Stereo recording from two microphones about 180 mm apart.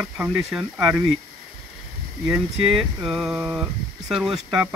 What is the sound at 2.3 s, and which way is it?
Speech, centre (ahead or behind).